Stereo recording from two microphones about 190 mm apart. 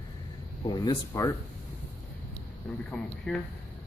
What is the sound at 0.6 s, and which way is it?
Speech, 20° left (ahead or behind).